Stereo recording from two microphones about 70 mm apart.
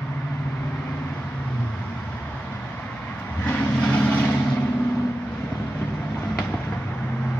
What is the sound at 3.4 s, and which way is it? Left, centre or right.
Vehicle, centre.